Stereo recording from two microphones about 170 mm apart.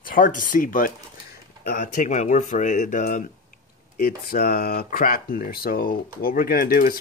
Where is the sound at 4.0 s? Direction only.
65° left (ahead or behind).